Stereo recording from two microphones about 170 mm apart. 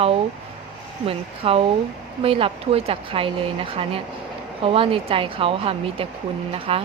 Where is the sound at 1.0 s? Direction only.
35° right (ahead or behind).